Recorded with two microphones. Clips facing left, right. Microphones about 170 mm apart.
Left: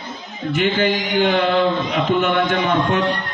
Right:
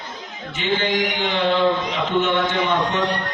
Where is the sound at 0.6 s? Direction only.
55° left (ahead or behind).